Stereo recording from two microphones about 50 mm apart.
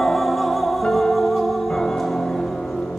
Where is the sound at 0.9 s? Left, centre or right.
Centre.